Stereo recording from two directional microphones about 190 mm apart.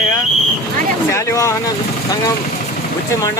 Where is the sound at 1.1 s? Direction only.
15° left (ahead or behind).